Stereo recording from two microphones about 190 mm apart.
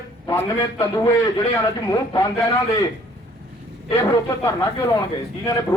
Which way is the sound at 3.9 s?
15° left (ahead or behind).